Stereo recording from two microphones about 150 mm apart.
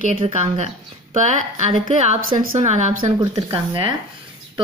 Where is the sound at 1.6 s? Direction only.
50° right (ahead or behind).